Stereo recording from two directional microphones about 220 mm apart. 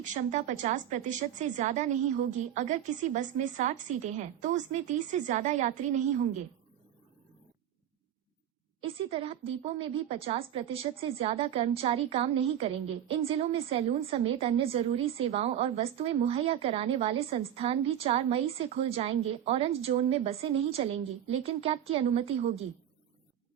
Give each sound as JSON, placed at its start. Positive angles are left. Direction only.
{"t": 0.0, "sound": "a woman's voice", "side_deg": -35}
{"t": 8.8, "sound": "a woman's voice", "side_deg": -25}